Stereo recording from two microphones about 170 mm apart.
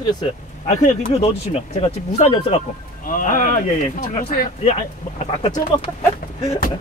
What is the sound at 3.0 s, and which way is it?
Speech, 55° left (ahead or behind).